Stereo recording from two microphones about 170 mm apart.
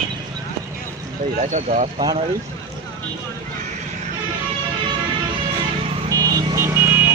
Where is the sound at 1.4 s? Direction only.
45° right (ahead or behind).